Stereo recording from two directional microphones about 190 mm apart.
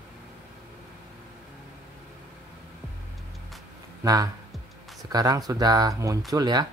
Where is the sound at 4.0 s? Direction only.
20° right (ahead or behind).